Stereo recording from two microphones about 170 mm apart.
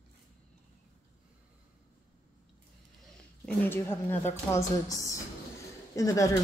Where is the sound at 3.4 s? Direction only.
10° left (ahead or behind).